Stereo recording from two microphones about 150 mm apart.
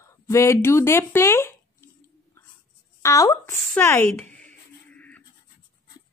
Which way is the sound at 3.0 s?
20° left (ahead or behind).